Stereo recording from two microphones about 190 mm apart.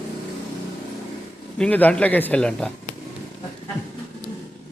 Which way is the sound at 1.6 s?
10° left (ahead or behind).